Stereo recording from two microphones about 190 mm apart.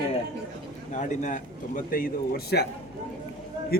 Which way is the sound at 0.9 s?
40° left (ahead or behind).